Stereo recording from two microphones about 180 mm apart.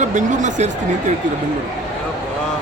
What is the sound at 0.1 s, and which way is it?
Speech, 45° right (ahead or behind).